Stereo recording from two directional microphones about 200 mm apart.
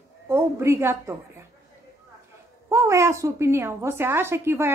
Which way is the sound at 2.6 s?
15° right (ahead or behind).